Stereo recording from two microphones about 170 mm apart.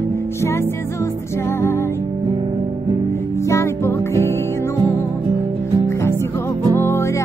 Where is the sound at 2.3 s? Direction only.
30° right (ahead or behind).